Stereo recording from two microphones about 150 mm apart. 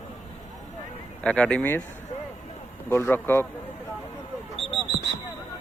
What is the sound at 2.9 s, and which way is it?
Speech, 15° left (ahead or behind).